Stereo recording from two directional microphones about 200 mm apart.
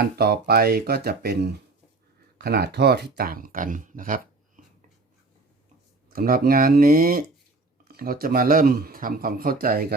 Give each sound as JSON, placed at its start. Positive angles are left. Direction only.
{"t": 0.0, "sound": "speech", "side_deg": -50}
{"t": 6.1, "sound": "speech", "side_deg": -45}